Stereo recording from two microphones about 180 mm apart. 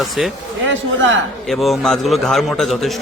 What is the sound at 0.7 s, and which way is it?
Speech, 90° right.